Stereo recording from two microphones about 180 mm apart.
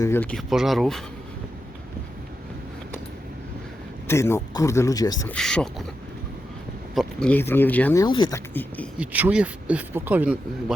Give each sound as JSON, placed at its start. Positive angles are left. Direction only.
{"t": 0.0, "sound": "speech", "side_deg": 10}
{"t": 4.0, "sound": "speech", "side_deg": 15}
{"t": 5.3, "sound": "speech", "side_deg": 5}
{"t": 6.9, "sound": "speech", "side_deg": 0}
{"t": 8.0, "sound": "speech", "side_deg": 25}
{"t": 8.5, "sound": "speech", "side_deg": 10}
{"t": 9.0, "sound": "speech", "side_deg": -10}